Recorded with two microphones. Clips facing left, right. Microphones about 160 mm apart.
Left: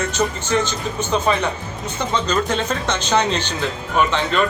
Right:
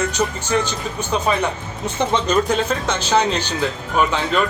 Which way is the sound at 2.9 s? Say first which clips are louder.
Even; 5° right (ahead or behind).